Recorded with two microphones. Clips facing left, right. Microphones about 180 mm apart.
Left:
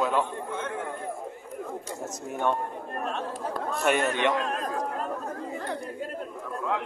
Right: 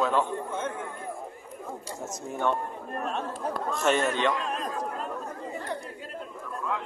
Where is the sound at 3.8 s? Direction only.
15° left (ahead or behind).